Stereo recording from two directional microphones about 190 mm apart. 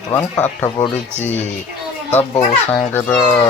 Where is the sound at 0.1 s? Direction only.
15° left (ahead or behind).